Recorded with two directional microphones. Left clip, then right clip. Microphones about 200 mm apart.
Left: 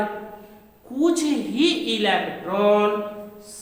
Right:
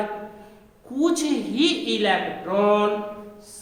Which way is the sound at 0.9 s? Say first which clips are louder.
Left 1 dB; 20° right (ahead or behind).